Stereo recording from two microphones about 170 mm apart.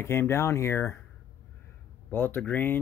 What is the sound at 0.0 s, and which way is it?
Speech, 15° left (ahead or behind).